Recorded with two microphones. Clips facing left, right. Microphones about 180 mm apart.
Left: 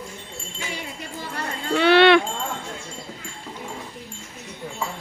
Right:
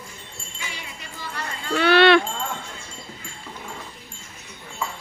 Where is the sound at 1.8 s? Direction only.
20° left (ahead or behind).